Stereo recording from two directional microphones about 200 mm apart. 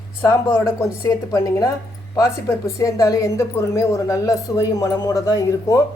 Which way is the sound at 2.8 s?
15° left (ahead or behind).